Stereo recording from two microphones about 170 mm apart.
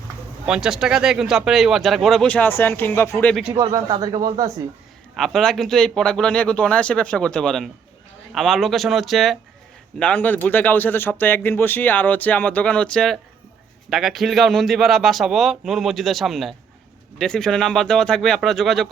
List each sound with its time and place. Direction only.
0.4 s speech: 5° right (ahead or behind); by 3.3 s 10° left (ahead or behind)
3.5 s speech: 20° right (ahead or behind)
5.1 s speech: 5° left (ahead or behind)